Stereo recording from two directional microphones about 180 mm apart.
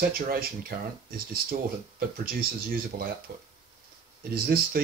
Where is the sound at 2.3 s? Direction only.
55° right (ahead or behind).